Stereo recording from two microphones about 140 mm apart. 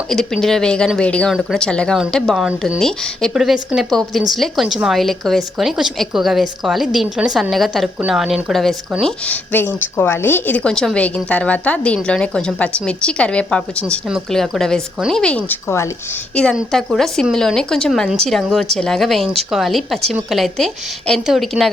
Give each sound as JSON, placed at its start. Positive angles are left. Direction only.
{"t": 0.1, "sound": "a woman's voice", "side_deg": 5}